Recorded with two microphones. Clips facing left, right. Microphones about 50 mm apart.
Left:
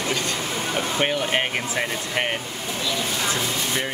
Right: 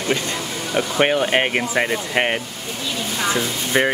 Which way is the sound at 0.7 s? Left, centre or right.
Right.